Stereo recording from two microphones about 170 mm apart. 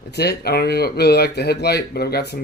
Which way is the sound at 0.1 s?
70° left (ahead or behind).